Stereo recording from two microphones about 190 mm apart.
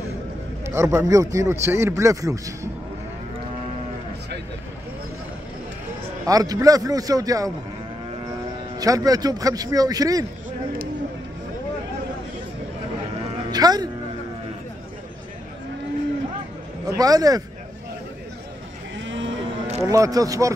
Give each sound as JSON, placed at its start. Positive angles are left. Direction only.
{"t": 0.7, "sound": "speech", "side_deg": -15}
{"t": 6.2, "sound": "speech", "side_deg": -20}
{"t": 8.7, "sound": "speech", "side_deg": -20}
{"t": 13.5, "sound": "speech", "side_deg": -20}
{"t": 16.8, "sound": "speech", "side_deg": -20}
{"t": 19.0, "sound": "cattle", "side_deg": -80}
{"t": 19.8, "sound": "speech", "side_deg": -15}